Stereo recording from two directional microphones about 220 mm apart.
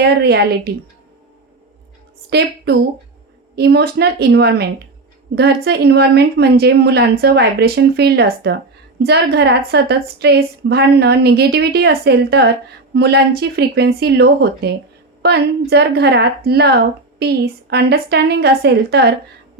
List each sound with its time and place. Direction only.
0.0 s a woman's voice: 45° right (ahead or behind)
2.3 s a woman's voice: 50° right (ahead or behind)